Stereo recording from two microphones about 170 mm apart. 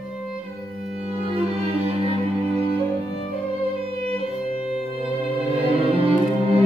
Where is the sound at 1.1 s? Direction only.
35° right (ahead or behind).